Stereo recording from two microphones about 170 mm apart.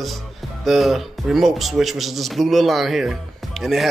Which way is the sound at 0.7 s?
Centre (ahead or behind).